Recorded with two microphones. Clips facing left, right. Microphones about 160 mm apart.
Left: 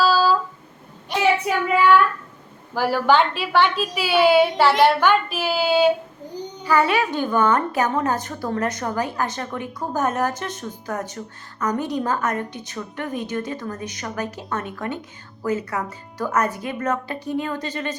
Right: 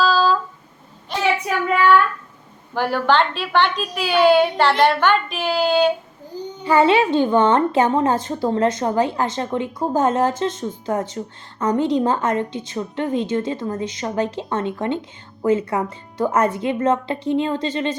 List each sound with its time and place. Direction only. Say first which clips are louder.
0.0 s a sound: right 1 dB; 10° left (ahead or behind)
2.7 s a woman's voice: even; 5° left (ahead or behind)
6.7 s a woman's voice: right 4 dB; 25° right (ahead or behind)